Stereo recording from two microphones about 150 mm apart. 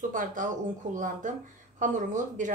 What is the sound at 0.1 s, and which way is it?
Speech, 60° right (ahead or behind).